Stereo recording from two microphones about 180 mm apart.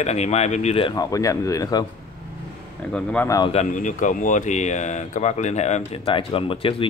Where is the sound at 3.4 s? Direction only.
40° left (ahead or behind).